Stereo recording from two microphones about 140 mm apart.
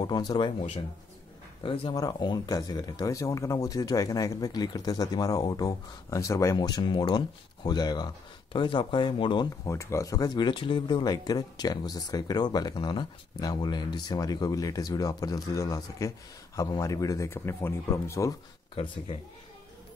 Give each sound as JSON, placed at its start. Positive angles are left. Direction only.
{"t": 0.0, "sound": "speech", "side_deg": 30}
{"t": 2.0, "sound": "speech", "side_deg": 30}
{"t": 9.7, "sound": "speech", "side_deg": 20}